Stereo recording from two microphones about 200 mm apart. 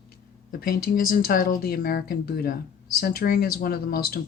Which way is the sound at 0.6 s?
45° left (ahead or behind).